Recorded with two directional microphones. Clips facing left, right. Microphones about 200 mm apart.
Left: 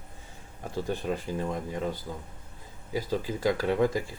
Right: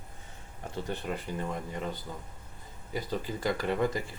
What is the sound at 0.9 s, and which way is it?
Speech, 10° left (ahead or behind).